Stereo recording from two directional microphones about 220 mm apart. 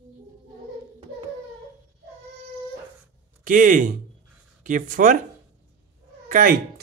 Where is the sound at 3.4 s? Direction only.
35° right (ahead or behind).